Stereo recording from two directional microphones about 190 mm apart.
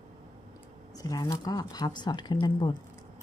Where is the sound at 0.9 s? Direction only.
20° left (ahead or behind).